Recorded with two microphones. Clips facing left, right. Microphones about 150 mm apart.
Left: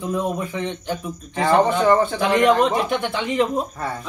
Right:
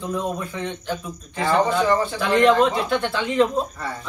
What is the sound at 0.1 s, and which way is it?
Speech, 20° left (ahead or behind).